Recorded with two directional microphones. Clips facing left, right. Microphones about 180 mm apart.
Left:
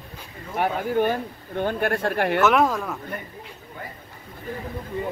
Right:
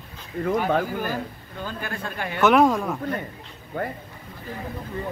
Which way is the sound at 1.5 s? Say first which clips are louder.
Left 10 dB; 60° left (ahead or behind).